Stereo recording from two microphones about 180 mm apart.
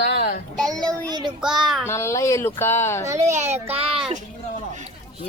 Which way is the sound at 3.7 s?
30° right (ahead or behind).